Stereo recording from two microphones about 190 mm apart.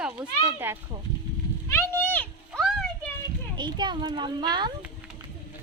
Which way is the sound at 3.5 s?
25° right (ahead or behind).